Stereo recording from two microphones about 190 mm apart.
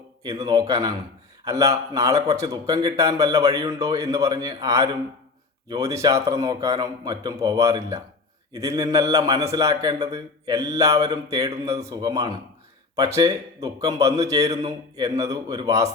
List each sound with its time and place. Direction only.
0.3 s a man's voice: 20° right (ahead or behind)